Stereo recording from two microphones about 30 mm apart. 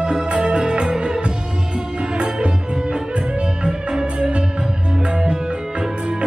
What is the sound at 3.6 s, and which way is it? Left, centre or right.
Music, right.